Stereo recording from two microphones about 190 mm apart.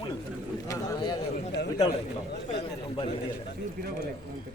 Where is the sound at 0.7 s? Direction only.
20° left (ahead or behind).